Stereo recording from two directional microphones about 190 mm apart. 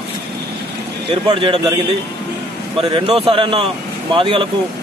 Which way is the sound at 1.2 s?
25° right (ahead or behind).